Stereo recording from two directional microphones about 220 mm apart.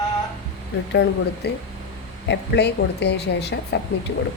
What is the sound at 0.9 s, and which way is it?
A woman's voice, 50° left (ahead or behind).